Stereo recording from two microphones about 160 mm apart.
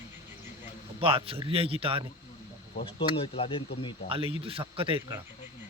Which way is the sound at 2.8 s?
35° left (ahead or behind).